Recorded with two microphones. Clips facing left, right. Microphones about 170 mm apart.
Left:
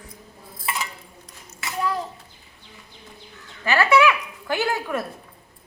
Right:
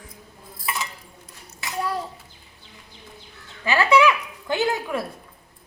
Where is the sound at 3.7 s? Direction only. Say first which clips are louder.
Even; 15° right (ahead or behind).